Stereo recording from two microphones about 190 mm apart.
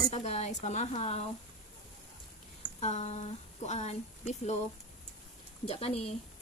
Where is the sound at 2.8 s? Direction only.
35° left (ahead or behind).